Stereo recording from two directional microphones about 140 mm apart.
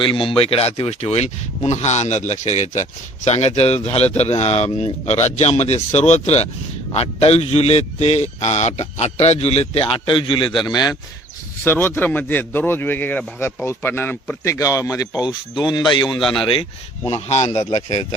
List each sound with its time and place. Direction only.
0.0 s a man's voice: 35° left (ahead or behind)
11.6 s a man's voice: 15° left (ahead or behind)
15.2 s speech: 5° right (ahead or behind)
15.7 s a man's voice: 30° left (ahead or behind)
16.1 s speech: centre (ahead or behind)
17.1 s a man's voice: 50° left (ahead or behind)